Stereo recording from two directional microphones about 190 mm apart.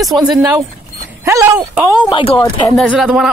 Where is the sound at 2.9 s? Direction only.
Centre (ahead or behind).